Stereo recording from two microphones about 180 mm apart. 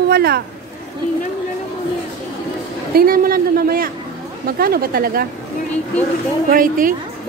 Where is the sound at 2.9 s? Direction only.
55° right (ahead or behind).